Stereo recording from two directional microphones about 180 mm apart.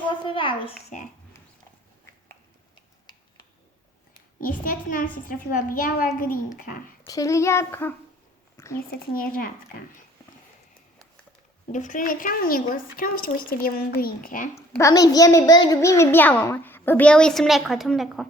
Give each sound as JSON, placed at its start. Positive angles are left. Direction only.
{"t": 0.3, "sound": "a child's voice", "side_deg": 30}
{"t": 4.4, "sound": "a woman's voice", "side_deg": 50}
{"t": 7.1, "sound": "a child's voice", "side_deg": 20}
{"t": 8.5, "sound": "a sound", "side_deg": 15}
{"t": 9.1, "sound": "a woman's voice", "side_deg": 50}
{"t": 11.7, "sound": "a woman's voice", "side_deg": 45}
{"t": 14.5, "sound": "a child's voice", "side_deg": 15}